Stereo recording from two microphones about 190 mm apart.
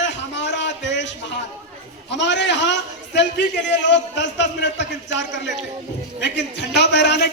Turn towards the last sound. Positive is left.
turn(degrees=65)  # may be behind; listen again after turning